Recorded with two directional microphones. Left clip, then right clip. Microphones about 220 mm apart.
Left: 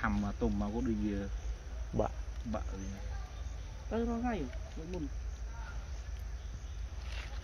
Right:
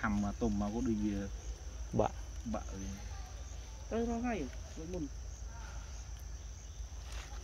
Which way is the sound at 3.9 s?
45° left (ahead or behind).